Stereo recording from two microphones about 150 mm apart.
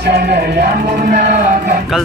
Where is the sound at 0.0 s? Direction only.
90° right.